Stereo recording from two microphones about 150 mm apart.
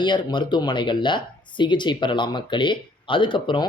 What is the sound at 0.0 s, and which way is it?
Speech, 30° left (ahead or behind).